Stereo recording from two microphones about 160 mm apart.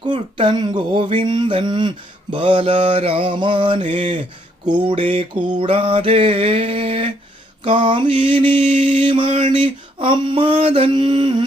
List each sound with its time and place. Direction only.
0.0 s mantra: 30° right (ahead or behind)